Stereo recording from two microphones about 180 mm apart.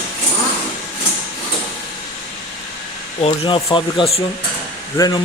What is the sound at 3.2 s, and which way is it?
Speech, 30° left (ahead or behind).